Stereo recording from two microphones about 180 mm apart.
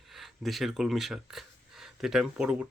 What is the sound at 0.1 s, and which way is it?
Speech, centre (ahead or behind).